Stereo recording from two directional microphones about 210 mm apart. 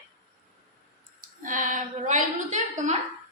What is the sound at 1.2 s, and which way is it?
A woman's voice, 40° right (ahead or behind).